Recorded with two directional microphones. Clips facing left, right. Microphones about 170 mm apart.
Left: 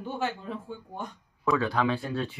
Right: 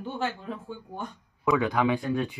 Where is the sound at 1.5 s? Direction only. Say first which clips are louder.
Right 2 dB; 15° right (ahead or behind).